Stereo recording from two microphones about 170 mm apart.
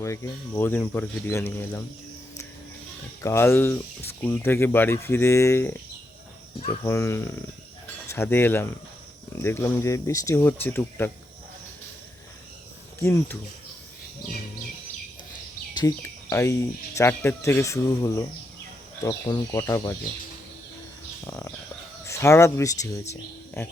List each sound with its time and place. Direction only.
0.0 s speech: 15° left (ahead or behind)
3.2 s speech: 15° left (ahead or behind)
13.0 s speech: 15° left (ahead or behind)
15.7 s speech: 20° left (ahead or behind)
21.2 s speech: 20° left (ahead or behind)